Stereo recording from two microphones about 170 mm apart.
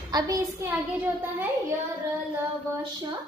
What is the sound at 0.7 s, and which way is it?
Speech, 10° right (ahead or behind).